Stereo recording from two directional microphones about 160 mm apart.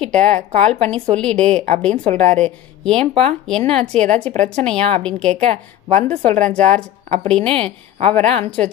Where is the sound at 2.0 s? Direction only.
45° right (ahead or behind).